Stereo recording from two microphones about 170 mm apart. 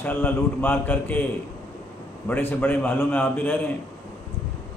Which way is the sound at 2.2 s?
10° left (ahead or behind).